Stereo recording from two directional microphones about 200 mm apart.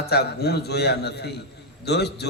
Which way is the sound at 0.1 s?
55° left (ahead or behind).